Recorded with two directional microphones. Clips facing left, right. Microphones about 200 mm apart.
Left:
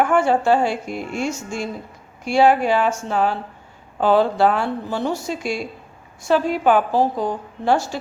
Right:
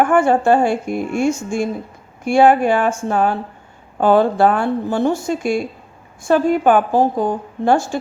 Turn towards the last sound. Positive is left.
turn(degrees=-50)  # may be behind; listen again after turning